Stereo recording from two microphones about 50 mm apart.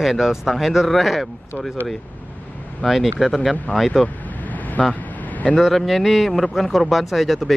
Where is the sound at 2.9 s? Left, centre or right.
Centre.